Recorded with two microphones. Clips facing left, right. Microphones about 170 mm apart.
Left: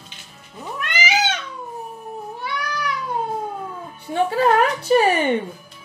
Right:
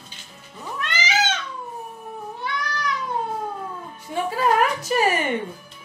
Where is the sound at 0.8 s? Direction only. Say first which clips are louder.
Left 2 dB; 10° left (ahead or behind).